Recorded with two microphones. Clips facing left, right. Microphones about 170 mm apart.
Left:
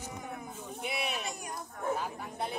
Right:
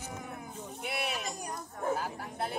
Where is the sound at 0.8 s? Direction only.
Centre (ahead or behind).